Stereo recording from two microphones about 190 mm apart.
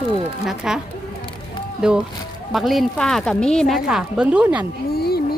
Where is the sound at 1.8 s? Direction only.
5° right (ahead or behind).